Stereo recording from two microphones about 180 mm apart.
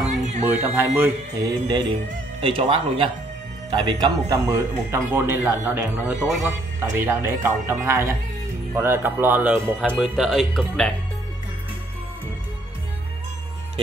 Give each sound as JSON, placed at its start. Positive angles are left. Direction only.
{"t": 0.5, "sound": "speech", "side_deg": -10}